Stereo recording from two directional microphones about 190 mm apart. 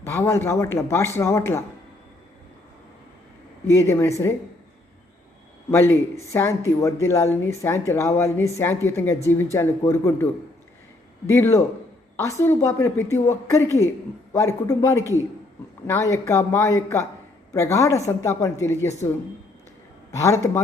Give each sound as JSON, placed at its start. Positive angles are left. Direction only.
{"t": 0.0, "sound": "a woman's voice", "side_deg": 15}
{"t": 3.7, "sound": "a woman's voice", "side_deg": 15}
{"t": 5.7, "sound": "a woman's voice", "side_deg": 15}
{"t": 11.3, "sound": "a woman's voice", "side_deg": 15}
{"t": 14.3, "sound": "a woman's voice", "side_deg": 15}
{"t": 20.1, "sound": "a woman's voice", "side_deg": 15}